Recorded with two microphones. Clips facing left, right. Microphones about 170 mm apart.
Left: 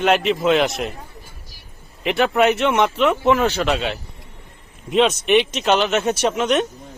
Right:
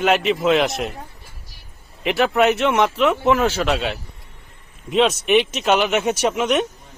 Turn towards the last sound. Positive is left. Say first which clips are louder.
# even
turn(degrees=-10)  # may be behind; listen again after turning